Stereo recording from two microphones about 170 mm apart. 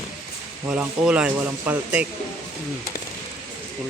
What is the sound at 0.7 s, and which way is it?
Speech, 5° right (ahead or behind).